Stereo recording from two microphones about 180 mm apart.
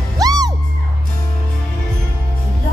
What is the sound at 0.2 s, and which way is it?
Music, 20° right (ahead or behind).